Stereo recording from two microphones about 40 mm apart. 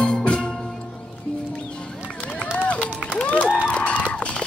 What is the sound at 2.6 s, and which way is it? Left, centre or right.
Run, left.